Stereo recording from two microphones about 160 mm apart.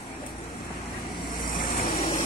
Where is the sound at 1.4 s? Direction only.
65° left (ahead or behind).